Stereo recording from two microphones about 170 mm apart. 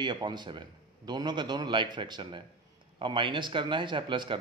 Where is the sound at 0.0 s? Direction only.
25° right (ahead or behind).